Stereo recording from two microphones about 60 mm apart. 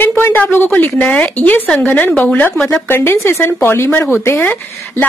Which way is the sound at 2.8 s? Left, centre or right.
Left.